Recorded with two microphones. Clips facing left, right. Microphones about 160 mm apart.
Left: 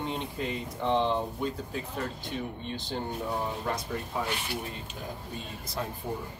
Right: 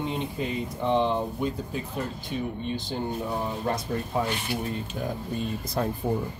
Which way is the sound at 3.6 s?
35° right (ahead or behind).